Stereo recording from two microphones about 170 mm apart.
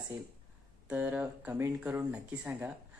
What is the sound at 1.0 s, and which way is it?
Speech, 10° right (ahead or behind).